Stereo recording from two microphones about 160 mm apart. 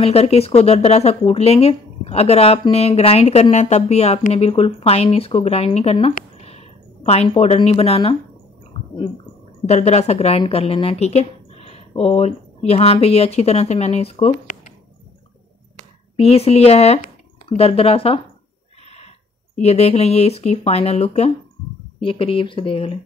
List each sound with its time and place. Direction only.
0.0 s speech: 40° left (ahead or behind)
9.7 s speech: 45° left (ahead or behind)
16.2 s speech: 40° left (ahead or behind)
19.5 s speech: 40° left (ahead or behind)